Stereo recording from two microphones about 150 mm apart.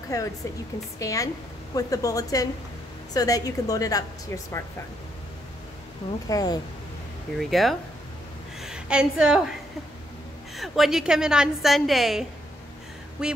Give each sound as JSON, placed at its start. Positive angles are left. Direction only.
{"t": 0.1, "sound": "a woman's voice", "side_deg": 20}
{"t": 6.2, "sound": "a woman's voice", "side_deg": 25}
{"t": 7.3, "sound": "a woman's voice", "side_deg": 0}
{"t": 10.5, "sound": "a woman's voice", "side_deg": 0}